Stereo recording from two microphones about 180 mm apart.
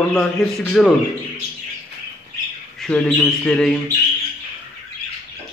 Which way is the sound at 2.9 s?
5° left (ahead or behind).